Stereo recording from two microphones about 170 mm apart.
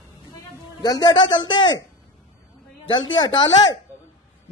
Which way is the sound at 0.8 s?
25° left (ahead or behind).